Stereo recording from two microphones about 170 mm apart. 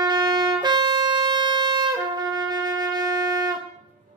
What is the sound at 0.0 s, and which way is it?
Wind instrument, 25° right (ahead or behind).